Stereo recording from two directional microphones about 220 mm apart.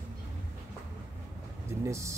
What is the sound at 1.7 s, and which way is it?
Speech, 15° right (ahead or behind).